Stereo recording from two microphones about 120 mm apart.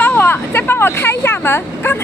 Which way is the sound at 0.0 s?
15° left (ahead or behind).